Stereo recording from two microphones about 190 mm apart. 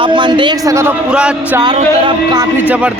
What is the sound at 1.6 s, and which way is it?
Speech, 25° right (ahead or behind).